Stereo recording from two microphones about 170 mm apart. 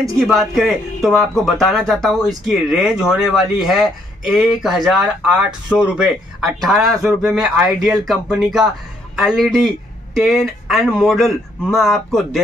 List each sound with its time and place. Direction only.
0.2 s speech: centre (ahead or behind)